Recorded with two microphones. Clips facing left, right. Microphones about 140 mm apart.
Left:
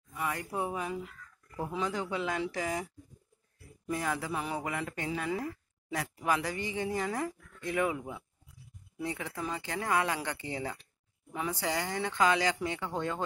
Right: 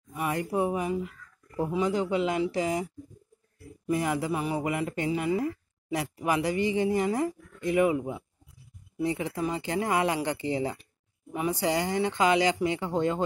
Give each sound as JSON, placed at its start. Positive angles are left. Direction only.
{"t": 0.1, "sound": "speech", "side_deg": -20}